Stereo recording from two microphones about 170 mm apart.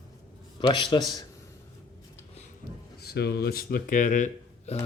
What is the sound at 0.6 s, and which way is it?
Speech, 30° left (ahead or behind).